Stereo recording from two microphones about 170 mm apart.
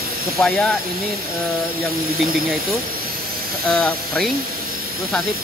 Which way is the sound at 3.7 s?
5° left (ahead or behind).